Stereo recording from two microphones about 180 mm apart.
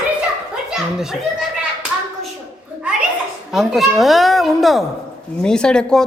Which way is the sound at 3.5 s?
Centre (ahead or behind).